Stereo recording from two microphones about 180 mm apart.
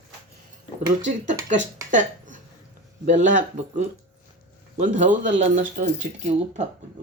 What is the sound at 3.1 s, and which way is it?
Speech, 45° right (ahead or behind).